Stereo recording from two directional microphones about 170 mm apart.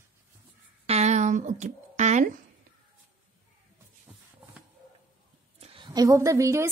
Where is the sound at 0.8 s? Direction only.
40° right (ahead or behind).